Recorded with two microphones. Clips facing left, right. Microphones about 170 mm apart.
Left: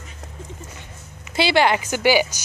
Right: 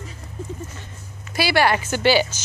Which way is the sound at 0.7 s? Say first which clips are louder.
Right 1 dB; 20° left (ahead or behind).